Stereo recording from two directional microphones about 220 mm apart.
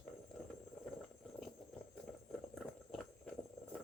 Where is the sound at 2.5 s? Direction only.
Centre (ahead or behind).